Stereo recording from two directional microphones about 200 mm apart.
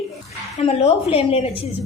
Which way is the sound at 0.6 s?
30° left (ahead or behind).